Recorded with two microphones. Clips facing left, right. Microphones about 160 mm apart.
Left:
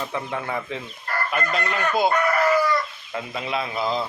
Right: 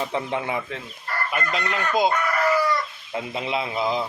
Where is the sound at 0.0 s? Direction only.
20° right (ahead or behind).